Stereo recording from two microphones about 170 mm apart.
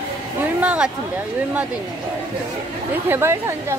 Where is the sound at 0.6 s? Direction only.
5° right (ahead or behind).